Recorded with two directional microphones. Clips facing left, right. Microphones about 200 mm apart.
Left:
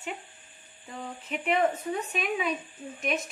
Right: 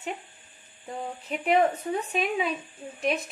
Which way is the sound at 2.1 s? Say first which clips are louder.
Right 2 dB; 30° right (ahead or behind).